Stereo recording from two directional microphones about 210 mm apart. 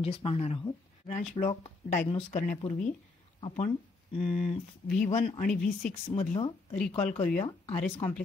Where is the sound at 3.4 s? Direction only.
30° left (ahead or behind).